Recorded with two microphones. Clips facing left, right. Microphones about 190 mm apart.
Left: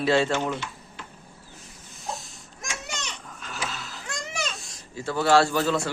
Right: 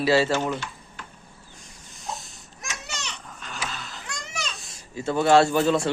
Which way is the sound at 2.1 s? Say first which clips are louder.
Even; centre (ahead or behind).